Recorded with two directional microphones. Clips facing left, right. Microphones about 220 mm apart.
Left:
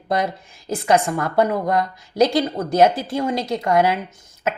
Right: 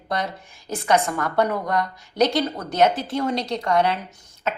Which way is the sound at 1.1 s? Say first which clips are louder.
Left 3 dB; 30° left (ahead or behind).